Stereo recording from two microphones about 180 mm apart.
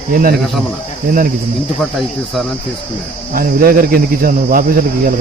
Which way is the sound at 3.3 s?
55° right (ahead or behind).